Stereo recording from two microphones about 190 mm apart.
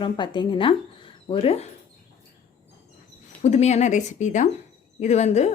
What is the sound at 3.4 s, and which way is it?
Speech, 35° left (ahead or behind).